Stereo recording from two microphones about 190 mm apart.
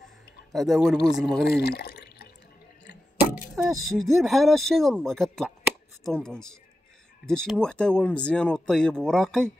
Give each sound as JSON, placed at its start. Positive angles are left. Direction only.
{"t": 0.5, "sound": "speech", "side_deg": 0}
{"t": 1.4, "sound": "drip", "side_deg": 55}
{"t": 3.5, "sound": "speech", "side_deg": 0}